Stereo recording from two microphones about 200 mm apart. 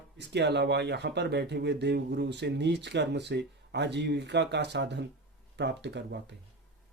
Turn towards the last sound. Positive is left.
turn(degrees=-60)  # may be behind; listen again after turning